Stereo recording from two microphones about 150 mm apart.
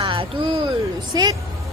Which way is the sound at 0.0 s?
35° right (ahead or behind).